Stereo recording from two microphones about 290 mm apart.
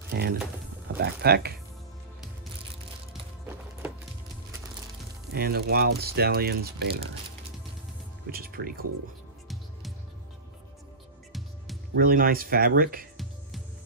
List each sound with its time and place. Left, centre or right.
0.1 s speech: right
5.3 s speech: right
8.3 s speech: right
11.3 s music: centre
11.9 s speech: right